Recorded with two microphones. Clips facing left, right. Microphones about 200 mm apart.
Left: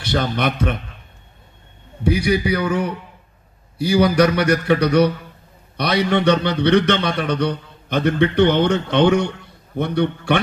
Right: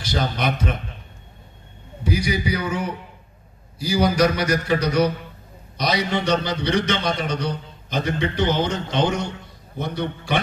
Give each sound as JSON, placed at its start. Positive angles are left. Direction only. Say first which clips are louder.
{"t": 0.0, "sound": "a man's voice", "louder": "left 3 dB", "side_deg": 60}
{"t": 2.0, "sound": "a man's voice", "louder": "left 5 dB", "side_deg": 60}